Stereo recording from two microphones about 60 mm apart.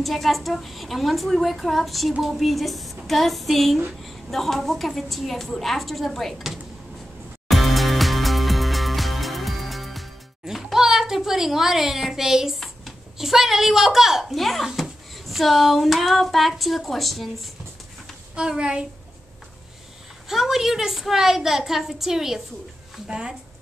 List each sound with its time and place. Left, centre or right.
0.0 s a woman's voice: centre
7.4 s music: centre
12.5 s a woman's voice: centre
14.7 s a sound: centre
18.3 s a child's voice: centre
20.2 s a woman's voice: centre